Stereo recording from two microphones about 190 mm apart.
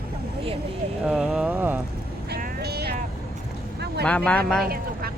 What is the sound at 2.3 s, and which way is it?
Vehicle, 55° right (ahead or behind).